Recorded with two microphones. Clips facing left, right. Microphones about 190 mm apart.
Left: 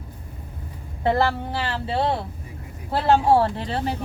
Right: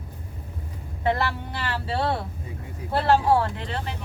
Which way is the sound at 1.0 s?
35° left (ahead or behind).